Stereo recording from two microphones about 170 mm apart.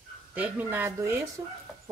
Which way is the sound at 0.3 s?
10° right (ahead or behind).